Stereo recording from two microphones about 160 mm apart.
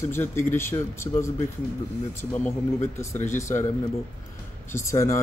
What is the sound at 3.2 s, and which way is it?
Speech, 50° left (ahead or behind).